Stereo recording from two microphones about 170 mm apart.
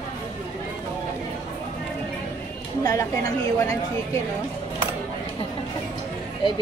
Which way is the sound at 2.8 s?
20° left (ahead or behind).